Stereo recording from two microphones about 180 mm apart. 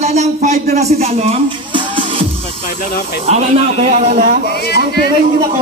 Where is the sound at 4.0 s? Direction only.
45° right (ahead or behind).